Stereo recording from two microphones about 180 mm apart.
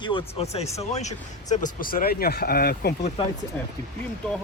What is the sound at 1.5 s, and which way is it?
Speech, 50° left (ahead or behind).